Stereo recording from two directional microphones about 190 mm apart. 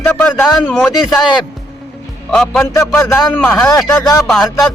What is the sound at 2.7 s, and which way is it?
A man's voice, 15° left (ahead or behind).